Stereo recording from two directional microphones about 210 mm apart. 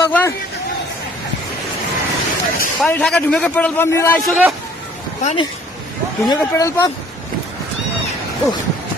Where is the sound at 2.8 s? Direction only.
5° left (ahead or behind).